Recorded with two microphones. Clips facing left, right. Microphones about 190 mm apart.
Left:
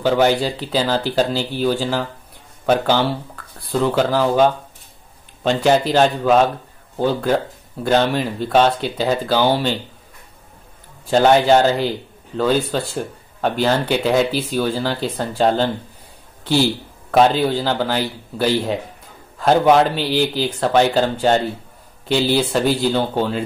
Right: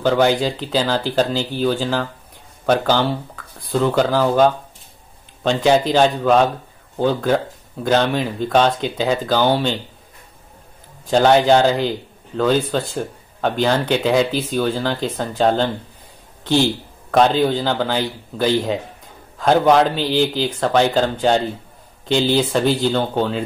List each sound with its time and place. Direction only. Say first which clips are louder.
0.0 s a man's voice: even; 5° left (ahead or behind)
11.1 s a man's voice: even; 5° left (ahead or behind)